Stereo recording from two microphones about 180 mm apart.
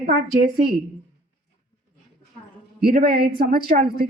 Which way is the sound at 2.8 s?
55° right (ahead or behind).